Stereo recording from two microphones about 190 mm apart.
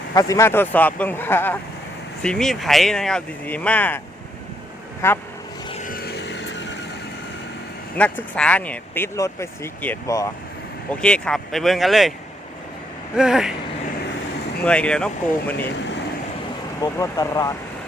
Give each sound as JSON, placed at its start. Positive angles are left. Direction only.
{"t": 0.1, "sound": "speech", "side_deg": 20}
{"t": 5.0, "sound": "speech", "side_deg": 15}
{"t": 5.8, "sound": "vehicle", "side_deg": 50}
{"t": 7.9, "sound": "speech", "side_deg": 5}
{"t": 11.0, "sound": "speech", "side_deg": 5}
{"t": 13.1, "sound": "speech", "side_deg": 0}
{"t": 14.6, "sound": "speech", "side_deg": 5}
{"t": 16.8, "sound": "speech", "side_deg": 20}